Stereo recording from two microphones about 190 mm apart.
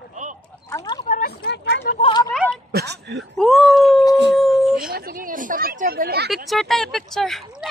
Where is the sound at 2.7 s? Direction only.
65° right (ahead or behind).